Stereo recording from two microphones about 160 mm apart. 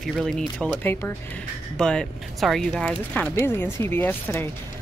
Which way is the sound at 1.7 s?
5° left (ahead or behind).